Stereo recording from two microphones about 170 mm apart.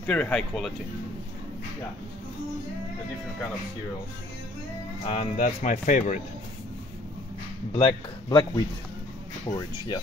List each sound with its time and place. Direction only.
0.0 s speech: 5° left (ahead or behind)
5.1 s speech: 45° left (ahead or behind)
7.7 s a man's voice: 30° left (ahead or behind)